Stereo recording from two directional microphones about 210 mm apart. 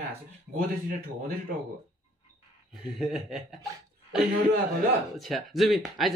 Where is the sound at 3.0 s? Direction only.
Centre (ahead or behind).